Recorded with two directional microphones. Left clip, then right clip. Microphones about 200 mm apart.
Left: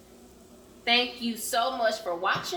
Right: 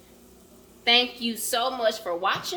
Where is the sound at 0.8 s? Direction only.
50° right (ahead or behind).